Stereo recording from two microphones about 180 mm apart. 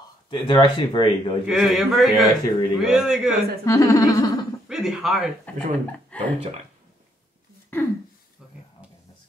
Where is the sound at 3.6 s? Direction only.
15° left (ahead or behind).